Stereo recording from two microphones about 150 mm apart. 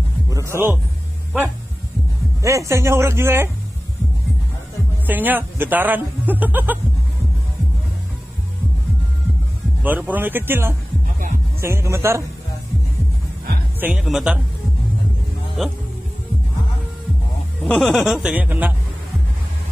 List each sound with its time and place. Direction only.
0.3 s music: 20° right (ahead or behind)
2.4 s speech: 20° right (ahead or behind)
5.0 s speech: 10° right (ahead or behind)
9.8 s speech: 10° right (ahead or behind)
13.7 s speech: 5° right (ahead or behind)
17.6 s speech: centre (ahead or behind)